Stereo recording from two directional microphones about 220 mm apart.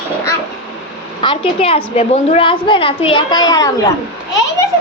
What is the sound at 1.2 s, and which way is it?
A woman's voice, 25° left (ahead or behind).